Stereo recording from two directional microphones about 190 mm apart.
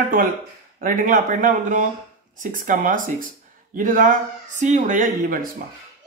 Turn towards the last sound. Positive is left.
turn(degrees=-45)  # may be behind; listen again after turning